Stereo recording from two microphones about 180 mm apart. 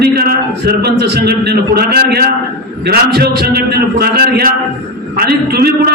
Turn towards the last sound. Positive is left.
turn(degrees=-60)  # may be behind; listen again after turning